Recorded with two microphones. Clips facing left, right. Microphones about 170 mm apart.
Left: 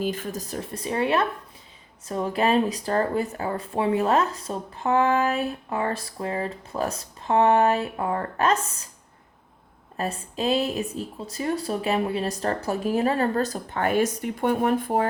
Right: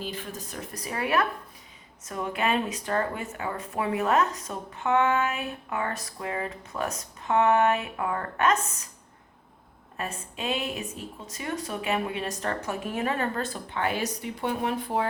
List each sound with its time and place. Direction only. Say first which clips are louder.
0.0 s speech: left 7 dB; 45° left (ahead or behind)
10.0 s speech: left 7 dB; 35° left (ahead or behind)